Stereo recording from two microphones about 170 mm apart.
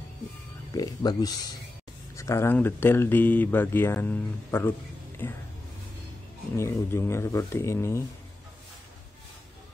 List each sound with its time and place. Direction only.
0.7 s speech: 25° left (ahead or behind)
6.5 s speech: 15° left (ahead or behind)